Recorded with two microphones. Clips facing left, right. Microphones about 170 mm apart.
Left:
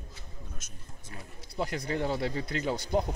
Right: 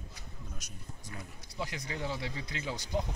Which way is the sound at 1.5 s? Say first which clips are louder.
Left 7 dB; 55° left (ahead or behind).